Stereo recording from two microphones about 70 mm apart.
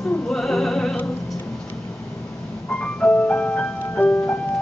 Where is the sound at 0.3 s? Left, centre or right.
Centre.